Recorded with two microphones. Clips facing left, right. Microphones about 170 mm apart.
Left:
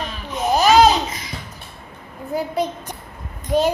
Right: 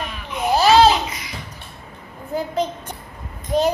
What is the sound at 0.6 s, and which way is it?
Laughter, 15° left (ahead or behind).